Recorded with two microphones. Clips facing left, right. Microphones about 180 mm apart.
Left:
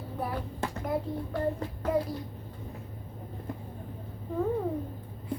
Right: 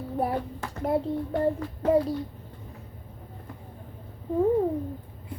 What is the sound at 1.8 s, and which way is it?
Speech, 30° right (ahead or behind).